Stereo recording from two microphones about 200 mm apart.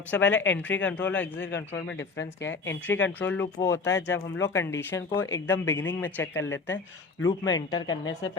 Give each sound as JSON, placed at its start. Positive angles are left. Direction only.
{"t": 0.1, "sound": "speech", "side_deg": 10}